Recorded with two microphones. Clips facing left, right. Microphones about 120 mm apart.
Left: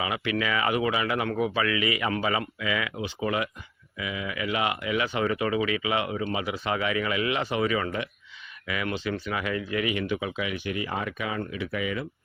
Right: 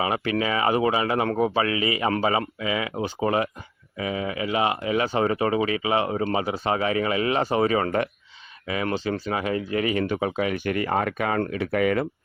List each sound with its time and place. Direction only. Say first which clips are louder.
0.0 s speech: right 4 dB; 35° right (ahead or behind)
8.6 s speech: right 4 dB; 35° right (ahead or behind); by 12.0 s 55° right (ahead or behind)